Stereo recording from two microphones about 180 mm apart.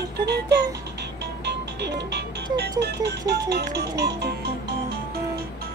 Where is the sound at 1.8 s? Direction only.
65° right (ahead or behind).